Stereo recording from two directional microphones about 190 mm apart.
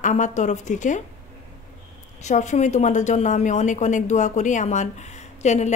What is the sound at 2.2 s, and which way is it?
A woman's voice, 40° left (ahead or behind).